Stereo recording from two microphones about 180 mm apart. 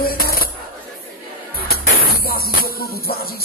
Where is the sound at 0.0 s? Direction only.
55° left (ahead or behind).